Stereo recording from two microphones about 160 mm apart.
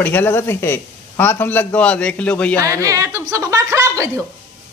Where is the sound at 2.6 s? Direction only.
20° right (ahead or behind).